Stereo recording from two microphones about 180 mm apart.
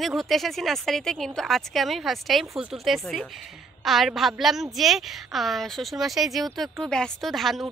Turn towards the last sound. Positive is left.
turn(degrees=0)  # may be behind; listen again after turning